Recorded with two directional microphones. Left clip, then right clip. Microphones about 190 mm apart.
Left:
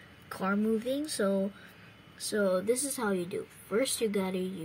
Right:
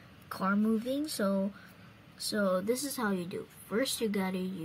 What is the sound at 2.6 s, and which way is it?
Speech, 5° right (ahead or behind).